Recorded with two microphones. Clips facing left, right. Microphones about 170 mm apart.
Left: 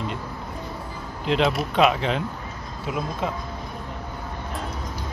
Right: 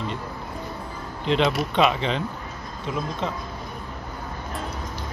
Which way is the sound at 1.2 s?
Centre (ahead or behind).